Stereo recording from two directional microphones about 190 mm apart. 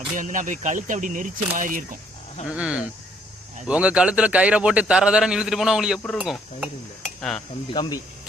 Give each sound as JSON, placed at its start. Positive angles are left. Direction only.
{"t": 0.2, "sound": "speech", "side_deg": -40}
{"t": 2.5, "sound": "a man's voice", "side_deg": -5}
{"t": 7.7, "sound": "speech", "side_deg": 20}